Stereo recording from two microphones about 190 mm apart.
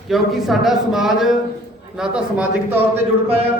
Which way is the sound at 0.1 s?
Centre (ahead or behind).